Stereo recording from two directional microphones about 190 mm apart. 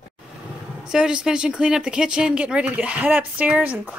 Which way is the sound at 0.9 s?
5° right (ahead or behind).